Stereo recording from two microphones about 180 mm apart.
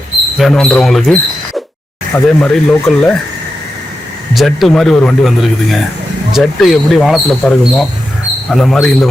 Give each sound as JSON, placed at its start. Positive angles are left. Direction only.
{"t": 0.3, "sound": "speech", "side_deg": 0}
{"t": 4.4, "sound": "speech", "side_deg": 0}